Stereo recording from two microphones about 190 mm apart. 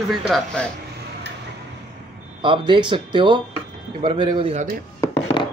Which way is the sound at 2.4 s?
25° right (ahead or behind).